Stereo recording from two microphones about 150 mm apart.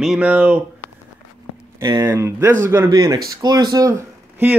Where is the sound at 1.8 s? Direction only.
20° right (ahead or behind).